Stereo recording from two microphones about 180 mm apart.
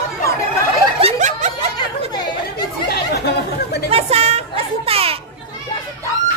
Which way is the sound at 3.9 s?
35° right (ahead or behind).